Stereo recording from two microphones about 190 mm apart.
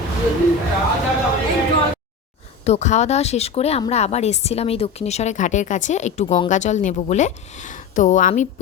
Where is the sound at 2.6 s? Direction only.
35° left (ahead or behind).